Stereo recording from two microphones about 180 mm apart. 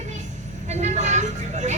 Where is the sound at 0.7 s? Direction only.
40° right (ahead or behind).